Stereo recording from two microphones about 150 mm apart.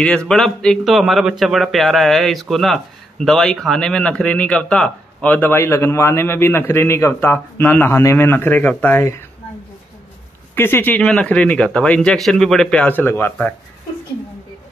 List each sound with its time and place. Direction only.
0.0 s a man's voice: 5° left (ahead or behind)
10.5 s speech: 15° left (ahead or behind)